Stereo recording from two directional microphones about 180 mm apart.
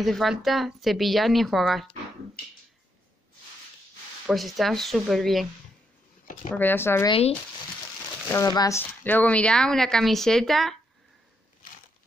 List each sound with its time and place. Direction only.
0.0 s speech: centre (ahead or behind)
4.3 s speech: centre (ahead or behind)
6.5 s speech: 10° left (ahead or behind)
7.1 s speech: 35° left (ahead or behind)
8.3 s speech: 20° left (ahead or behind); by 10.8 s centre (ahead or behind)